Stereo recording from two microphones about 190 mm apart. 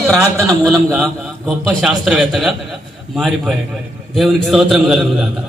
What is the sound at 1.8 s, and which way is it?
A man's voice, centre (ahead or behind).